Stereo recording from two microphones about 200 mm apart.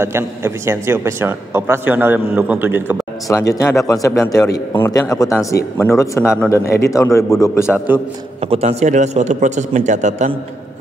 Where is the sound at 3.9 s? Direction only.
15° left (ahead or behind).